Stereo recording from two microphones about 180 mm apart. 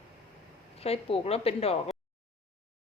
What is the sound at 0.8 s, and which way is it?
A woman's voice, 35° left (ahead or behind).